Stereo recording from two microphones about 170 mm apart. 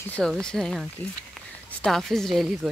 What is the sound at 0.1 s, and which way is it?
A woman's voice, 5° left (ahead or behind).